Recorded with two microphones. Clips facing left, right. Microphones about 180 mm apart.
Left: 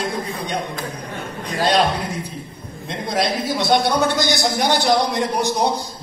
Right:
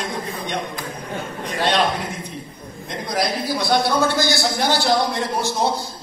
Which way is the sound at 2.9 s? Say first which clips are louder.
Left 2 dB; 25° left (ahead or behind).